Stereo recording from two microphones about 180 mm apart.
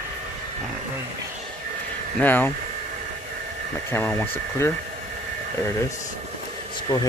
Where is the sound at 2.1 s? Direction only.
10° left (ahead or behind).